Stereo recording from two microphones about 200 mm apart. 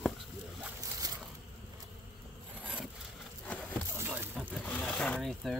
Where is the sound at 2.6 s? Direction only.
5° right (ahead or behind).